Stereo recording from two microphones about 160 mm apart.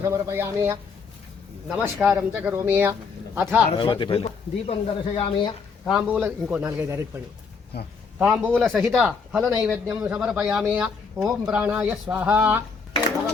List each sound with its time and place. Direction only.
0.0 s speech: 15° right (ahead or behind)
3.7 s speech: 30° left (ahead or behind)
5.9 s speech: 5° right (ahead or behind)
7.7 s speech: 75° left (ahead or behind)
8.2 s speech: 5° right (ahead or behind)